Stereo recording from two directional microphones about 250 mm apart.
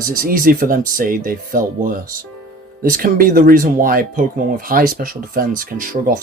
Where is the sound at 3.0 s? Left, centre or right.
Right.